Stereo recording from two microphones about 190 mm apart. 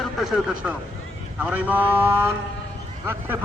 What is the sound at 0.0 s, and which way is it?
Speech, centre (ahead or behind).